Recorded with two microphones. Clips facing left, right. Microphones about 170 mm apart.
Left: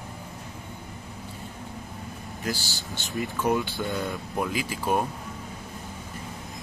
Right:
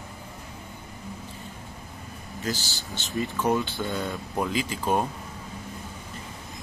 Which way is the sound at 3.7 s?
Centre (ahead or behind).